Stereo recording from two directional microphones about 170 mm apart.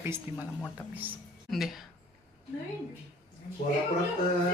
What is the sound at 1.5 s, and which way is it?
Speech, centre (ahead or behind).